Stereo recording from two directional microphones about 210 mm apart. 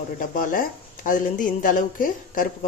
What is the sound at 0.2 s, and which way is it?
A woman's voice, 40° left (ahead or behind).